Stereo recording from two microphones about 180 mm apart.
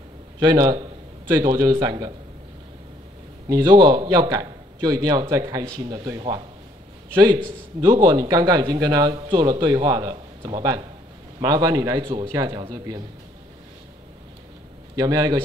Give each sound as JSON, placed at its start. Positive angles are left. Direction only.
{"t": 0.4, "sound": "speech", "side_deg": -20}
{"t": 3.4, "sound": "speech", "side_deg": -20}
{"t": 7.9, "sound": "speech", "side_deg": -25}
{"t": 15.0, "sound": "speech", "side_deg": -20}